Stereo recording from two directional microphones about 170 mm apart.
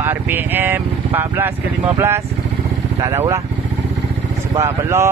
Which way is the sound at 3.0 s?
20° right (ahead or behind).